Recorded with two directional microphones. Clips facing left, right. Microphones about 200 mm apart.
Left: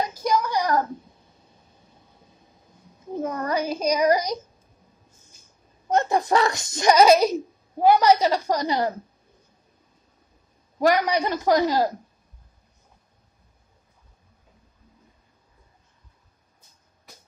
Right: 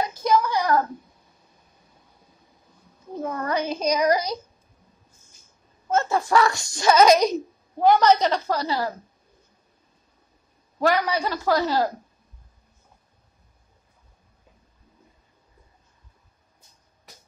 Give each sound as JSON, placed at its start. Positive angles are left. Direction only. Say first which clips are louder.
{"t": 0.2, "sound": "a sound", "louder": "right 3 dB", "side_deg": 10}
{"t": 3.2, "sound": "a child's voice", "louder": "left 1 dB", "side_deg": 20}
{"t": 5.9, "sound": "speech", "louder": "left 1 dB", "side_deg": 15}
{"t": 10.8, "sound": "speech", "louder": "left 2 dB", "side_deg": 15}